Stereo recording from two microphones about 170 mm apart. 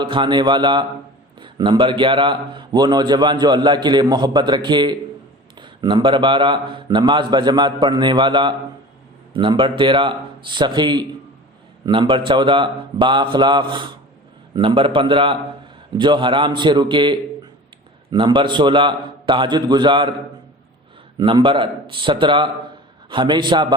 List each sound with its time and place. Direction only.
0.0 s a man's voice: 30° right (ahead or behind)
21.2 s a man's voice: 30° right (ahead or behind)